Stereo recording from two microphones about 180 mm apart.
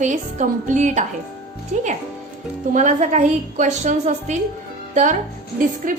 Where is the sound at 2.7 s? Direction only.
45° right (ahead or behind).